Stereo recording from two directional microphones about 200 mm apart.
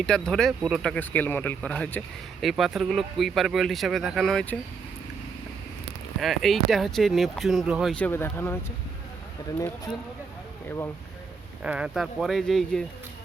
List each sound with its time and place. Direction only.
0.0 s speech: 5° left (ahead or behind)
6.1 s speech: centre (ahead or behind)
10.7 s speech: 10° left (ahead or behind)
11.6 s speech: 5° right (ahead or behind)